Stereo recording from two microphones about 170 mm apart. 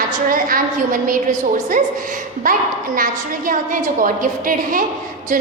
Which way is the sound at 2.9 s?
55° right (ahead or behind).